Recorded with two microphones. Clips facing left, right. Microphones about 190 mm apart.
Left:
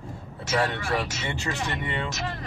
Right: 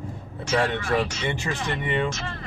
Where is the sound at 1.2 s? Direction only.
15° right (ahead or behind).